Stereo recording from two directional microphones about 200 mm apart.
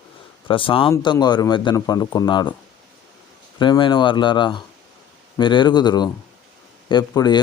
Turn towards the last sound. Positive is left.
turn(degrees=20)  # may be behind; listen again after turning